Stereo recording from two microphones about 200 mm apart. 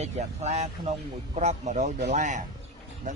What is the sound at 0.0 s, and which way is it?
Speech, 35° right (ahead or behind).